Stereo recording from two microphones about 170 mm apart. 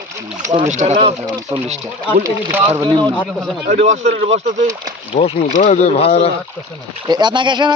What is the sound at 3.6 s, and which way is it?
Speech, 45° right (ahead or behind).